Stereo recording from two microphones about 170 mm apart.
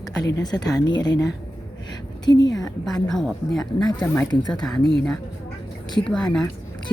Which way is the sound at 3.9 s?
20° left (ahead or behind).